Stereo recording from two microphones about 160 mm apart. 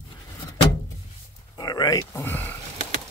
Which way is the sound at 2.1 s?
15° left (ahead or behind).